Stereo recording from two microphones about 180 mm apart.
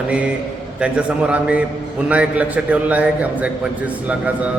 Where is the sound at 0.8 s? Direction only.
5° right (ahead or behind).